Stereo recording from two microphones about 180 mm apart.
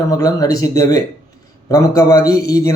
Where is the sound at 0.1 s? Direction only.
20° left (ahead or behind).